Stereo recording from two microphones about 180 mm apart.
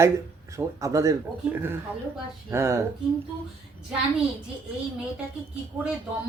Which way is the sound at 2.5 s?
15° right (ahead or behind).